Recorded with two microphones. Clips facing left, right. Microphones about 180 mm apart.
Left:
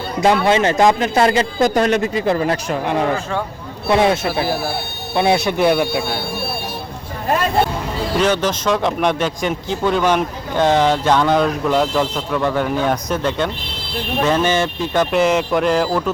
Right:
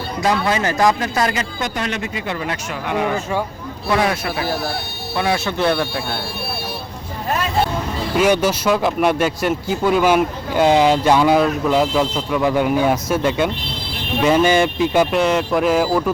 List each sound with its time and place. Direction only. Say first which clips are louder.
0.2 s speech: left 5 dB; 25° left (ahead or behind)
3.8 s speech: left 4 dB; 25° left (ahead or behind)
4.4 s speech: left 2 dB; 5° left (ahead or behind)
5.1 s speech: left 4 dB; 20° left (ahead or behind)
8.1 s speech: right 2 dB; 10° right (ahead or behind)
15.1 s speech: left 1 dB; centre (ahead or behind)